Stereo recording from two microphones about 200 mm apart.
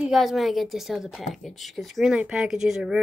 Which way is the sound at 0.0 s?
Centre (ahead or behind).